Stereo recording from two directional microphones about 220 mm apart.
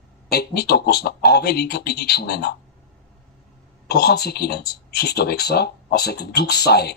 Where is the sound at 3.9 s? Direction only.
45° left (ahead or behind).